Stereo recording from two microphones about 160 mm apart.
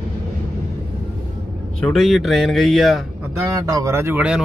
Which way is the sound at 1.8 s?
Centre (ahead or behind).